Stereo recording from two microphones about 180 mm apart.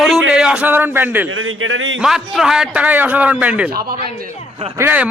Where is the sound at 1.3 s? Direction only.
90° right.